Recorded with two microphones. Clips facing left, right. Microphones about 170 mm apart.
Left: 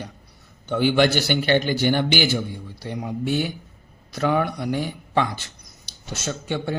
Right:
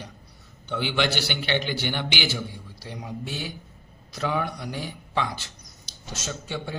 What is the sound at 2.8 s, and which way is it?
A man's voice, 60° left (ahead or behind).